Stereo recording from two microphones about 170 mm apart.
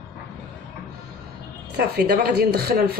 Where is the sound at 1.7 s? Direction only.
65° right (ahead or behind).